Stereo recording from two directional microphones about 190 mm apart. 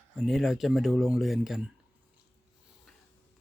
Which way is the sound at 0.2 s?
Centre (ahead or behind).